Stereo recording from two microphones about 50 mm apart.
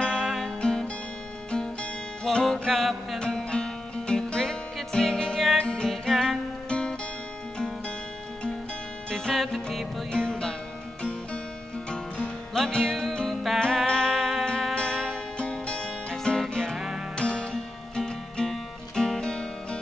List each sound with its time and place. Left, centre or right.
0.2 s music: centre
0.6 s music: centre
2.4 s music: centre
3.2 s music: centre
9.1 s music: centre
12.5 s music: centre
13.6 s music: centre
16.7 s music: centre
17.2 s music: centre